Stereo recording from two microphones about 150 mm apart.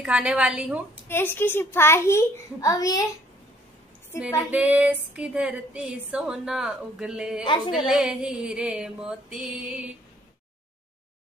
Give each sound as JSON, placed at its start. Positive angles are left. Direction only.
{"t": 0.0, "sound": "speech", "side_deg": -10}
{"t": 1.0, "sound": "a child's voice", "side_deg": 15}
{"t": 4.5, "sound": "speech", "side_deg": -10}
{"t": 7.4, "sound": "a woman's voice", "side_deg": 30}
{"t": 7.7, "sound": "a sound", "side_deg": -5}